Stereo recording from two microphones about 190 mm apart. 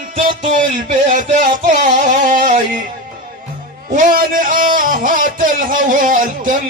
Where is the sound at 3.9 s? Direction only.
45° right (ahead or behind).